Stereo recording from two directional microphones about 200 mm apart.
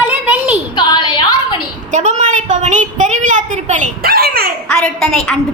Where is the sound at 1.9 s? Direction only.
35° right (ahead or behind).